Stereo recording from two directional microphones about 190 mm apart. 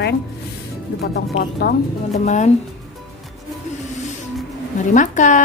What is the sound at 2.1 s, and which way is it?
Speech, 40° left (ahead or behind).